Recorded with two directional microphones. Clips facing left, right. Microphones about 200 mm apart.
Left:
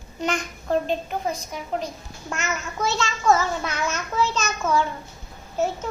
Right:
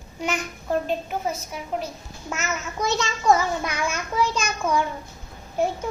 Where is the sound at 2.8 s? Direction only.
15° right (ahead or behind).